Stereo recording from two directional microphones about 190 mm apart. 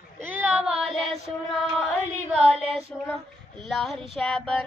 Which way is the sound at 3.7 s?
Centre (ahead or behind).